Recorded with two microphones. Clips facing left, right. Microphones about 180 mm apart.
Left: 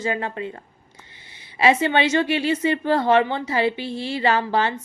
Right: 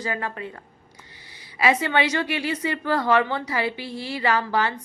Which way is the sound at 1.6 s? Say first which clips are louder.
Left 3 dB; 25° left (ahead or behind).